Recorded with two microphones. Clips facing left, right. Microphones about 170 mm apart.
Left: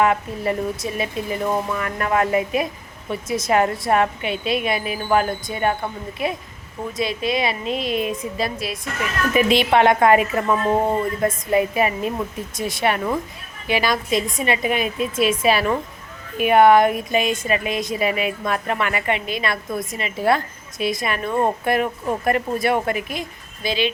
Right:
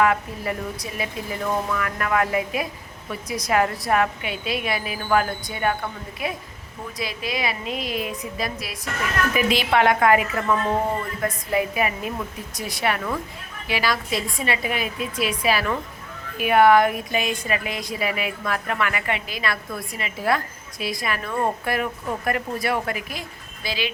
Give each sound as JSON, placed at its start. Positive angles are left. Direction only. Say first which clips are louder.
{"t": 0.0, "sound": "a woman's voice", "louder": "left 2 dB", "side_deg": 25}